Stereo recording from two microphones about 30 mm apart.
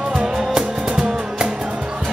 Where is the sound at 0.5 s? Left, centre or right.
Right.